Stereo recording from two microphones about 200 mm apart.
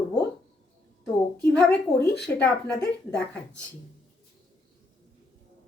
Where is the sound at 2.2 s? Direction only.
5° left (ahead or behind).